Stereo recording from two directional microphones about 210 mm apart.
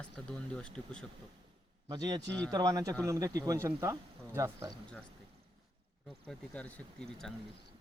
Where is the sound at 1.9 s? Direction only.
20° right (ahead or behind).